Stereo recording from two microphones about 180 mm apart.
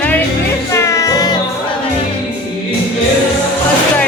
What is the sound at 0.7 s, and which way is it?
Music, 15° left (ahead or behind).